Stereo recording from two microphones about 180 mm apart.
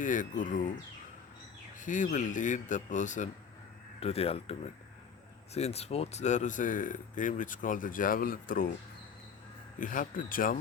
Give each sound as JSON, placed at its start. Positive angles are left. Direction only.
{"t": 0.0, "sound": "speech", "side_deg": 45}
{"t": 1.8, "sound": "speech", "side_deg": 45}
{"t": 9.7, "sound": "speech", "side_deg": 45}